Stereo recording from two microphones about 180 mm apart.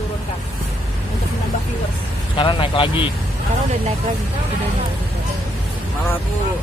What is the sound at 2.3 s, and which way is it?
Speech, 30° left (ahead or behind).